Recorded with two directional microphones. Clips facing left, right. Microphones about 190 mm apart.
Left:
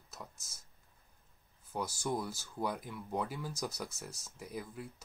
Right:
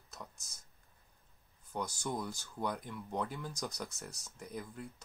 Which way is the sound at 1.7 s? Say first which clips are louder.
Left 2 dB; 5° left (ahead or behind).